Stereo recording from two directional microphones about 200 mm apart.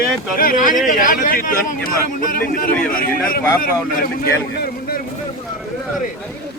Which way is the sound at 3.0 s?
45° left (ahead or behind).